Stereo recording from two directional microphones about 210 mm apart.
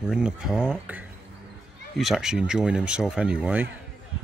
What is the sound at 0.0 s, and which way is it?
Speech, 5° right (ahead or behind).